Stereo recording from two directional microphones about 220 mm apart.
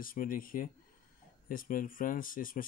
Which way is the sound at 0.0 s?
40° left (ahead or behind).